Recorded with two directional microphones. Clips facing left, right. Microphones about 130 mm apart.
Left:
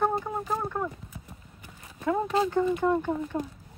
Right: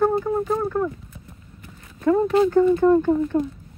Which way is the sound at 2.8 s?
Centre (ahead or behind).